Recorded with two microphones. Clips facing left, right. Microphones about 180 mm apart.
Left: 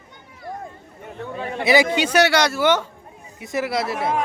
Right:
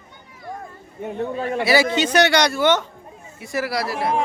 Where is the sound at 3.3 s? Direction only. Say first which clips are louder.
Left 1 dB; 20° left (ahead or behind).